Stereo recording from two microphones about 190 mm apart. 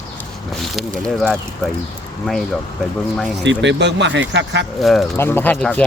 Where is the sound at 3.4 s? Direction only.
70° right (ahead or behind).